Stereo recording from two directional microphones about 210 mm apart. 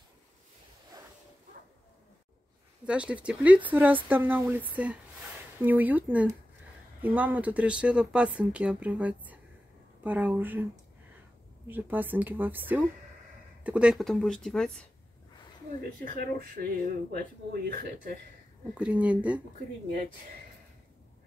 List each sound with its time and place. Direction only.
2.8 s speech: 5° right (ahead or behind)
16.0 s speech: 40° right (ahead or behind)
18.8 s speech: 5° right (ahead or behind)